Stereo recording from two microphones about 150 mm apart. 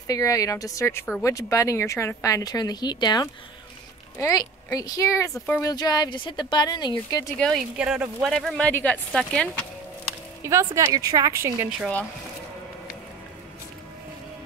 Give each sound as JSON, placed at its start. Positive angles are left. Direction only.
{"t": 0.0, "sound": "speech", "side_deg": 25}
{"t": 7.3, "sound": "speech", "side_deg": 0}
{"t": 10.4, "sound": "speech", "side_deg": -20}